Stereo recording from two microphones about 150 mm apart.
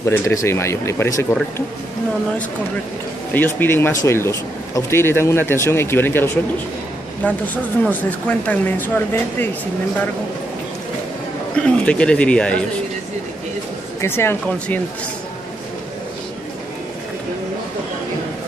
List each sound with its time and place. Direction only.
0.0 s speech: 15° left (ahead or behind)
3.3 s speech: 15° left (ahead or behind)
11.5 s speech: 5° left (ahead or behind)
14.0 s speech: 15° left (ahead or behind)